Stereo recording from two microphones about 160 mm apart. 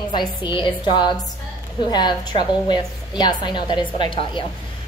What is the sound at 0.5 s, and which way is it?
A woman's voice, 30° left (ahead or behind).